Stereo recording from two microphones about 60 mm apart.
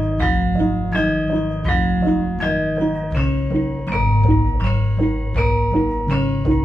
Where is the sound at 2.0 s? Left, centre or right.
Left.